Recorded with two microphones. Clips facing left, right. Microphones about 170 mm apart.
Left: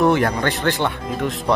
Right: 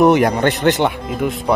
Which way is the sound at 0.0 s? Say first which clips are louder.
Right 5 dB; 15° right (ahead or behind).